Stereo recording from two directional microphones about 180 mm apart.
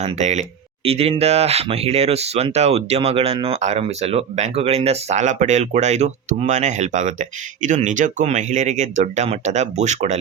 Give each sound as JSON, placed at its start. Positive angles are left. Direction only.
{"t": 0.0, "sound": "speech", "side_deg": -40}